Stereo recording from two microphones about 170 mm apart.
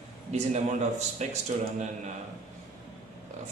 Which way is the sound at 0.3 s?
45° right (ahead or behind).